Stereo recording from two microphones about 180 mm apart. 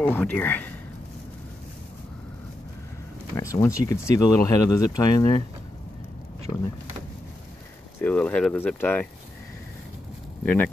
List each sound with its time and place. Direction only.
0.0 s speech: 10° left (ahead or behind)
3.3 s speech: 15° left (ahead or behind)
8.0 s speech: 10° left (ahead or behind)
10.4 s speech: 10° left (ahead or behind)